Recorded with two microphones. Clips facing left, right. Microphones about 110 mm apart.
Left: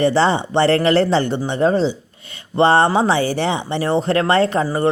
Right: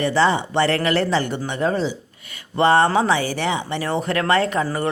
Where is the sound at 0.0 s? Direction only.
30° left (ahead or behind).